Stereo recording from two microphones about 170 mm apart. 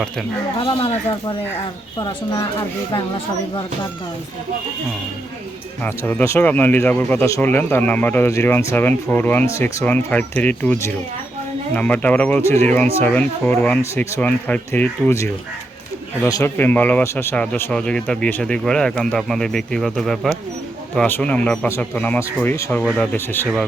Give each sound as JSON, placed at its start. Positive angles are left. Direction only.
{"t": 0.6, "sound": "speech", "side_deg": 35}
{"t": 5.8, "sound": "speech", "side_deg": 10}